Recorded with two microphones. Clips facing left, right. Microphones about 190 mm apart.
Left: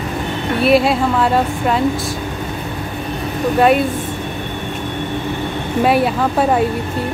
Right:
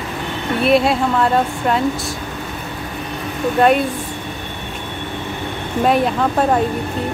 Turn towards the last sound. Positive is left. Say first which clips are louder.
# left 1 dB
turn(degrees=5)  # may be behind; listen again after turning